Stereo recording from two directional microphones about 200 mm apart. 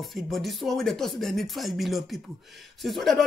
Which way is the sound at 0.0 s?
Centre (ahead or behind).